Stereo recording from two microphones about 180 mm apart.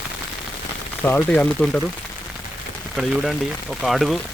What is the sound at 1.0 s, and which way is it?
Speech, 10° left (ahead or behind).